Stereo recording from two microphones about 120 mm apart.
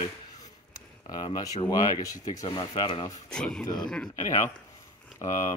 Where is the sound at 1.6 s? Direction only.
30° left (ahead or behind).